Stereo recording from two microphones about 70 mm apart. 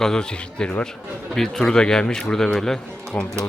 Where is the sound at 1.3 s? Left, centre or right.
Centre.